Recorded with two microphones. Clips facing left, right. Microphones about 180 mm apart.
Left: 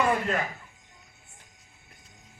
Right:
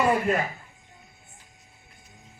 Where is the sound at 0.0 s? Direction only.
10° right (ahead or behind).